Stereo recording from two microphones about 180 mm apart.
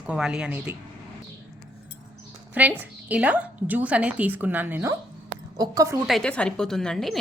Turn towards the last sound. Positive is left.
turn(degrees=5)  # may be behind; listen again after turning